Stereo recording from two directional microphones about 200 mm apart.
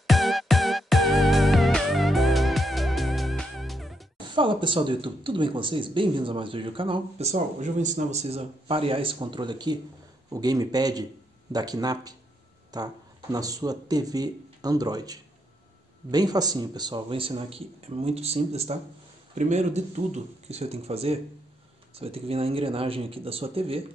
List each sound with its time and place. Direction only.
0.0 s music: centre (ahead or behind)
4.4 s speech: 25° right (ahead or behind)